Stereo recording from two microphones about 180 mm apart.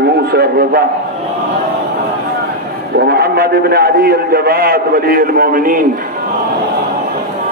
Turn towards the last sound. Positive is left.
turn(degrees=-50)  # may be behind; listen again after turning